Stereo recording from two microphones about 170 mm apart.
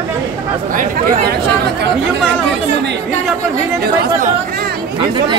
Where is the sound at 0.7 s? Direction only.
70° right (ahead or behind).